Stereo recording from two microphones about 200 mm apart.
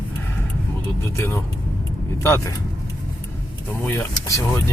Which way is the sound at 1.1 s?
10° left (ahead or behind).